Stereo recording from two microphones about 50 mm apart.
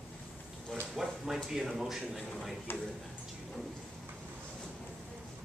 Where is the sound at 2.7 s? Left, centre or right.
Left.